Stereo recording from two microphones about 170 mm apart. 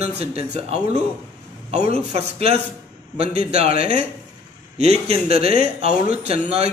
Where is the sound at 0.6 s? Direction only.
40° right (ahead or behind).